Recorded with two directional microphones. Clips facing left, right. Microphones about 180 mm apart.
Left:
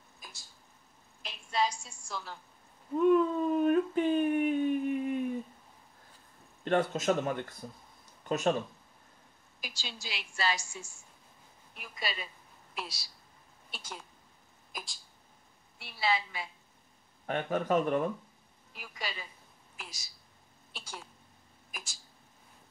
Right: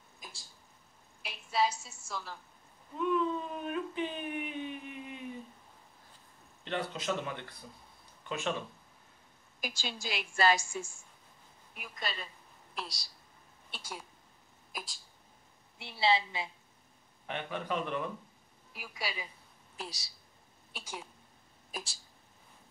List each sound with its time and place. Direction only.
0.2 s a sound: 20° right (ahead or behind)
1.2 s a sound: 5° right (ahead or behind)
3.0 s a sound: 45° left (ahead or behind)
6.6 s speech: 50° left (ahead or behind)
8.0 s a sound: 40° left (ahead or behind)
9.6 s a woman's voice: 50° right (ahead or behind)
11.9 s a woman's voice: 5° left (ahead or behind)
15.8 s a woman's voice: 25° right (ahead or behind)
17.3 s speech: 45° left (ahead or behind)
18.7 s a woman's voice: 10° right (ahead or behind)
19.8 s a woman's voice: 35° right (ahead or behind)
20.7 s a woman's voice: 15° right (ahead or behind)
21.7 s a woman's voice: 35° right (ahead or behind)